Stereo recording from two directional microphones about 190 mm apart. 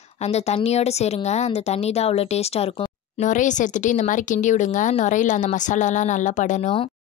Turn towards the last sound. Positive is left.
turn(degrees=35)  # may be behind; listen again after turning